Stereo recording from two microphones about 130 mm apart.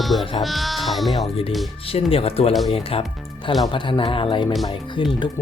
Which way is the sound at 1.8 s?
45° left (ahead or behind).